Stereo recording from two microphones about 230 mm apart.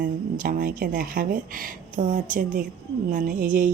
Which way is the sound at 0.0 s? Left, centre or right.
Right.